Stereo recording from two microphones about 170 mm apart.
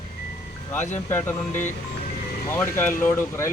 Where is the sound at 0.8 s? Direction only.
45° left (ahead or behind).